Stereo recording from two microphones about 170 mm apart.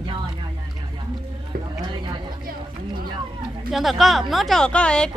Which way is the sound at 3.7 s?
Centre (ahead or behind).